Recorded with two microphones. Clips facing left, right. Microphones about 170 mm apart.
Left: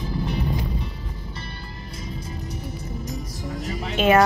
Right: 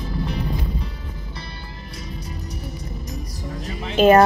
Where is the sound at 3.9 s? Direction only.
40° right (ahead or behind).